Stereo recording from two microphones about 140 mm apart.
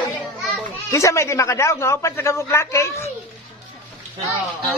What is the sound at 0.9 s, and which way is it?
A man's voice, 20° left (ahead or behind).